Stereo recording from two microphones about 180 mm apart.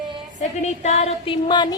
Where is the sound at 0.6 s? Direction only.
40° left (ahead or behind).